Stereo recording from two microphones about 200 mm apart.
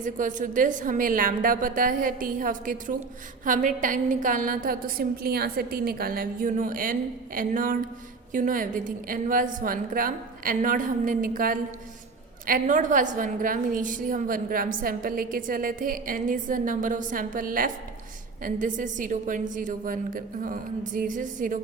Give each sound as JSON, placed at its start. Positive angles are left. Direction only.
{"t": 0.0, "sound": "a woman's voice", "side_deg": -40}